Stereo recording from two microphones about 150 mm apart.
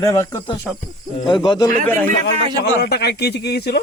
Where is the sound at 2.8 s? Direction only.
90° left.